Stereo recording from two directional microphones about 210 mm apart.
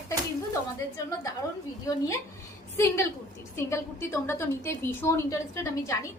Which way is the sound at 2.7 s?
15° left (ahead or behind).